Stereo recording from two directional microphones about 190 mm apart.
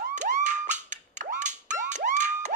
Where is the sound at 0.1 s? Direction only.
40° right (ahead or behind).